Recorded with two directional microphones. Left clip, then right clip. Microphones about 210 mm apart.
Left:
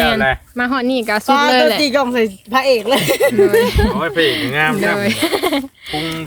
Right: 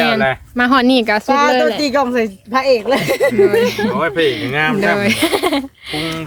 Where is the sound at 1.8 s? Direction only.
45° left (ahead or behind).